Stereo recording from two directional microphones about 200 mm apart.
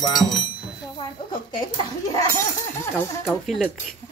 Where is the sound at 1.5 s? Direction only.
20° left (ahead or behind).